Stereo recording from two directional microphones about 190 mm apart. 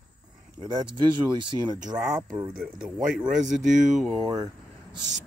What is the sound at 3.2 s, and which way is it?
Speech, 40° right (ahead or behind).